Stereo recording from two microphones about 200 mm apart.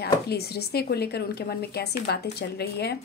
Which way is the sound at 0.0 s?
55° left (ahead or behind).